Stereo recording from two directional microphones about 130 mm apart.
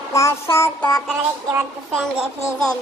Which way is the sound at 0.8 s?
5° left (ahead or behind).